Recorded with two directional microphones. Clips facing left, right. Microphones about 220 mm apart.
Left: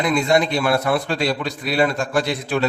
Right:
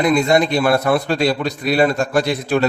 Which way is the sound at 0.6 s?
40° right (ahead or behind).